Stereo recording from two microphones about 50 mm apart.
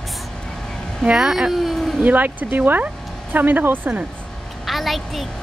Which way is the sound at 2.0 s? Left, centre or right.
Right.